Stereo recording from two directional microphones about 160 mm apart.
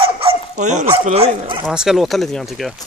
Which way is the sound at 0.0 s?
35° right (ahead or behind).